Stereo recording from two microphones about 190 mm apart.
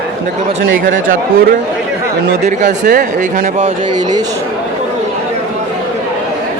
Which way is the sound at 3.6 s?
20° right (ahead or behind).